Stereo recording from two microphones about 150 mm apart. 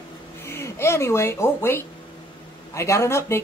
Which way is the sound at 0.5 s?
15° left (ahead or behind).